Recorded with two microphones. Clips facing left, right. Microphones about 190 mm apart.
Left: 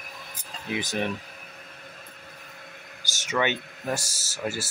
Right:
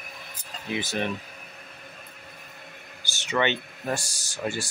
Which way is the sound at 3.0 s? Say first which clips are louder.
Even; 45° left (ahead or behind).